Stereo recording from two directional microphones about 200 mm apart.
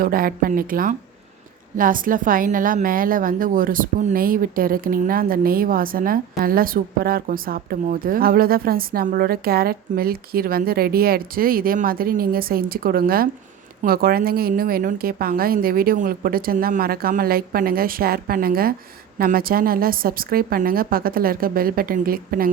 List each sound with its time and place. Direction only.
0.0 s a woman's voice: 45° right (ahead or behind)